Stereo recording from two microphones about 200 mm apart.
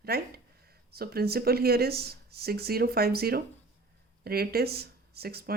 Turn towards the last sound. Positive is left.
turn(degrees=-50)  # may be behind; listen again after turning